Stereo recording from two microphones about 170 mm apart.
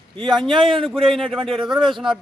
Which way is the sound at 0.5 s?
30° right (ahead or behind).